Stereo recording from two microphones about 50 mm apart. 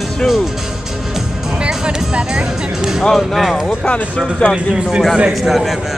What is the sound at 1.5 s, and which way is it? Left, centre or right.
Music, right.